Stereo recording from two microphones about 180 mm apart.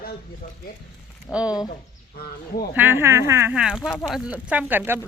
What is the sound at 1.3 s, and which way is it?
Speech, 10° left (ahead or behind).